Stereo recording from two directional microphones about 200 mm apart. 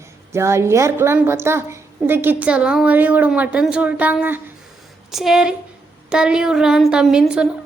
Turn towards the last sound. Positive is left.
turn(degrees=-5)  # may be behind; listen again after turning